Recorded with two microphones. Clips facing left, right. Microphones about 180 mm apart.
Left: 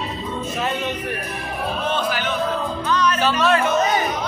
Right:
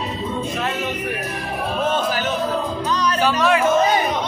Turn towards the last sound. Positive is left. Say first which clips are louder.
# right 1 dB
turn(degrees=-15)  # may be behind; listen again after turning